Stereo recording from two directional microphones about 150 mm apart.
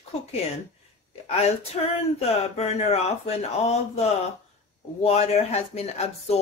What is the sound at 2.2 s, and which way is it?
Speech, 45° left (ahead or behind).